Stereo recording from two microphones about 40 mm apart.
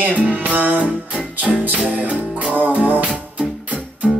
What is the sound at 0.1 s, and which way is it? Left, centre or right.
Music, right.